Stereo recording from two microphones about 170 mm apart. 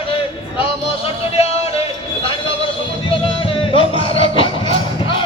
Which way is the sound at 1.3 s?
35° left (ahead or behind).